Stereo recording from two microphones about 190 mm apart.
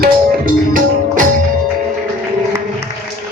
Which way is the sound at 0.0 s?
50° right (ahead or behind).